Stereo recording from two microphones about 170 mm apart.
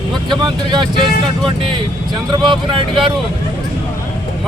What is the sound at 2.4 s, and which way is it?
Speech, 30° right (ahead or behind).